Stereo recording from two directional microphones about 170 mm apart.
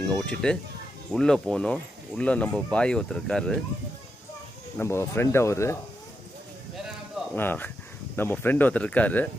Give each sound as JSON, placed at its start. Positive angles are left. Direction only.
{"t": 0.1, "sound": "speech", "side_deg": 5}
{"t": 4.7, "sound": "speech", "side_deg": 15}
{"t": 7.3, "sound": "speech", "side_deg": 10}